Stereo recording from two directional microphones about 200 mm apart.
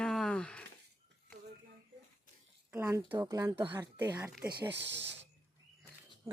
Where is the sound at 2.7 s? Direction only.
10° right (ahead or behind).